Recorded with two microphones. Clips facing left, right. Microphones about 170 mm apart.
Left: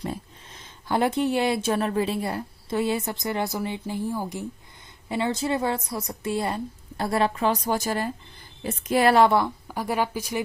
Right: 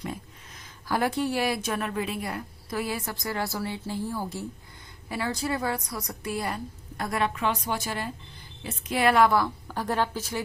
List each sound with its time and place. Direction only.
0.0 s a woman's voice: 30° left (ahead or behind)
9.6 s speech: 10° left (ahead or behind)